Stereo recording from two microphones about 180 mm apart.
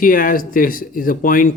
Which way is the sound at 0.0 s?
50° left (ahead or behind).